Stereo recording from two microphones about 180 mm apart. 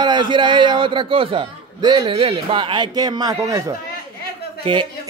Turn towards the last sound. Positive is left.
turn(degrees=-30)  # may be behind; listen again after turning